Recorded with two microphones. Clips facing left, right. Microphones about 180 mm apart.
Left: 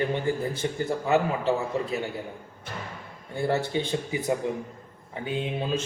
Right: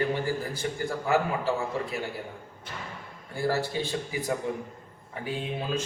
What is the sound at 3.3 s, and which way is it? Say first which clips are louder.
A man's voice: left 2 dB; 20° left (ahead or behind).